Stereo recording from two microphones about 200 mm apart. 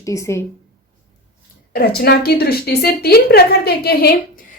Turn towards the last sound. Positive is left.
turn(degrees=50)  # may be behind; listen again after turning